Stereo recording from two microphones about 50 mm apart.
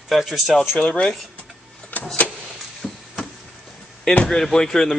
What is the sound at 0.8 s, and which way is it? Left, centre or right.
Speech, centre.